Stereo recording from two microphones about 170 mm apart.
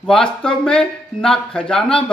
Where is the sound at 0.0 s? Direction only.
5° left (ahead or behind).